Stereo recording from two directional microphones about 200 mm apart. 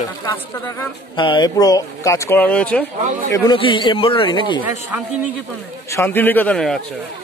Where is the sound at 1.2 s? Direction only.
20° left (ahead or behind); by 2.8 s 5° left (ahead or behind).